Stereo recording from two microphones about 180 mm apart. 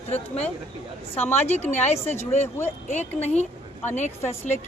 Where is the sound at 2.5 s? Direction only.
10° left (ahead or behind).